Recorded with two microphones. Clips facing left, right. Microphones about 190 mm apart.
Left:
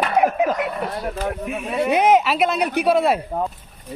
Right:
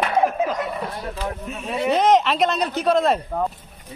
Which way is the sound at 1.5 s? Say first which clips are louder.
Left 1 dB; 10° left (ahead or behind).